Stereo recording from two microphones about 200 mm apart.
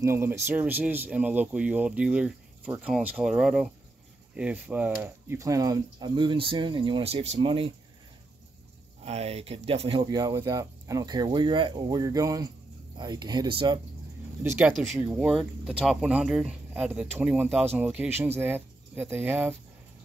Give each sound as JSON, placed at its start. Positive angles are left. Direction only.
{"t": 0.0, "sound": "speech", "side_deg": -10}
{"t": 9.0, "sound": "speech", "side_deg": -30}
{"t": 14.4, "sound": "speech", "side_deg": -10}